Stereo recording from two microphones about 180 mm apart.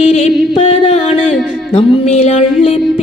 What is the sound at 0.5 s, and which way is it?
Music, 30° left (ahead or behind).